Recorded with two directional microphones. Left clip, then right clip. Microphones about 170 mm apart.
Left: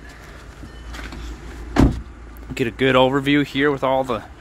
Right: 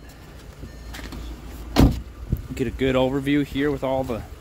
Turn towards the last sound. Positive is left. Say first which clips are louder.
# left 5 dB
turn(degrees=-10)  # may be behind; listen again after turning